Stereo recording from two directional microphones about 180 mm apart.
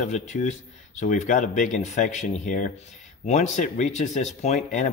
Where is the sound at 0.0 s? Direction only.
40° left (ahead or behind).